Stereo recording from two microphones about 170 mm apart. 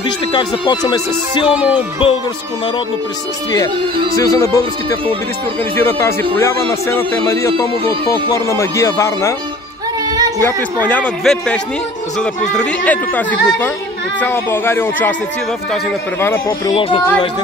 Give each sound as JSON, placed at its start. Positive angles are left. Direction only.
{"t": 0.3, "sound": "music", "side_deg": 25}
{"t": 4.1, "sound": "music", "side_deg": 20}
{"t": 5.8, "sound": "speech", "side_deg": 15}
{"t": 10.4, "sound": "speech", "side_deg": 10}